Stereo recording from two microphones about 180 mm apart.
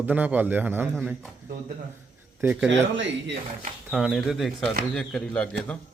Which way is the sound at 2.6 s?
90° right.